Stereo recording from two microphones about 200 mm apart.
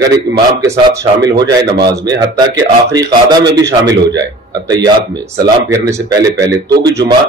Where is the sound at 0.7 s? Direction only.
20° right (ahead or behind).